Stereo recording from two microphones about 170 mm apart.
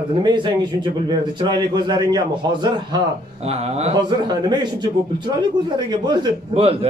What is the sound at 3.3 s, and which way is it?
Speech, 40° right (ahead or behind).